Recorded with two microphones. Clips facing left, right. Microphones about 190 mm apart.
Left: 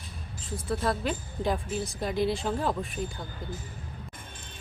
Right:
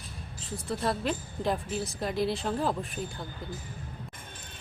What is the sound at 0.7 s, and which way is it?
Speech, centre (ahead or behind).